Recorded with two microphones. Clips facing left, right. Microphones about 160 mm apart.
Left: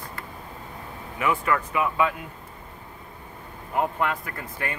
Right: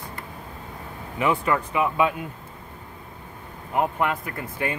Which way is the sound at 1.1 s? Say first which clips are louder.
Right 2 dB; 25° right (ahead or behind).